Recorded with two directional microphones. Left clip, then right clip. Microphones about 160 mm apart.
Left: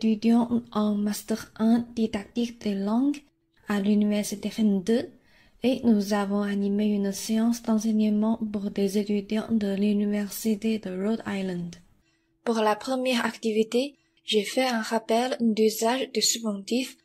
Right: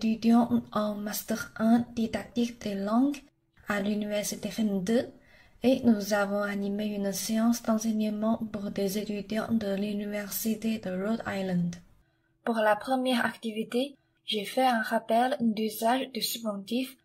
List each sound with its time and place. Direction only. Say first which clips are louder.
0.0 s a woman's voice: left 1 dB; 35° left (ahead or behind)